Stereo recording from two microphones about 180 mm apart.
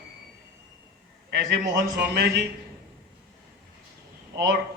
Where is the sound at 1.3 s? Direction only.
70° right (ahead or behind).